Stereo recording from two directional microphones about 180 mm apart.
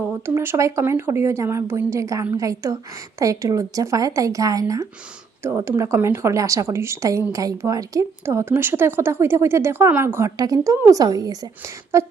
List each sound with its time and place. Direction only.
0.0 s a woman's voice: 10° right (ahead or behind)